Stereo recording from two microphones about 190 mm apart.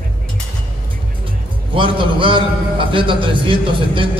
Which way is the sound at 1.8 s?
25° right (ahead or behind).